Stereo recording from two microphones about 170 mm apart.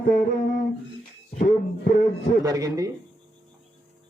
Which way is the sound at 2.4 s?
20° right (ahead or behind).